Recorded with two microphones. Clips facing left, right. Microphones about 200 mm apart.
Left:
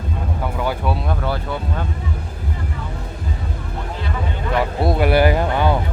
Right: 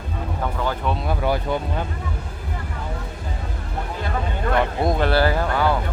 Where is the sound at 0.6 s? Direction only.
10° left (ahead or behind).